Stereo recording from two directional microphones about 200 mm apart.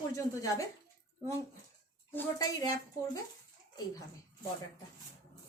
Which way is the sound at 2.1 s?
20° left (ahead or behind).